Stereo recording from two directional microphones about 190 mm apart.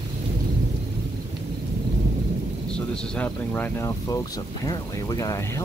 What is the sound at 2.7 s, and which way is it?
Speech, 5° left (ahead or behind).